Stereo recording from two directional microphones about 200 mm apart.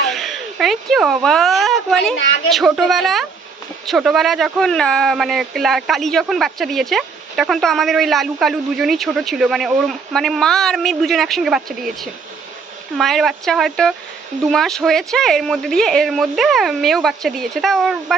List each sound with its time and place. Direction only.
0.1 s a woman's voice: centre (ahead or behind)